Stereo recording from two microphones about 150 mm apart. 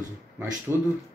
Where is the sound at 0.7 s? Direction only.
15° right (ahead or behind).